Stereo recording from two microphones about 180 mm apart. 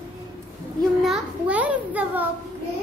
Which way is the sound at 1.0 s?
5° right (ahead or behind).